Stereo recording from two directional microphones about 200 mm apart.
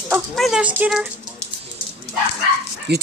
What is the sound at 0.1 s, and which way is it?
Speech, 5° right (ahead or behind).